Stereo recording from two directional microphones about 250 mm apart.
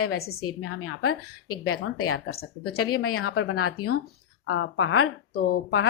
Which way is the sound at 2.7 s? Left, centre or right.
Left.